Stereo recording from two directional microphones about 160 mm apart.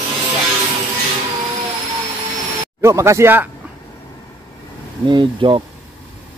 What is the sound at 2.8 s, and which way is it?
Speech, 20° right (ahead or behind).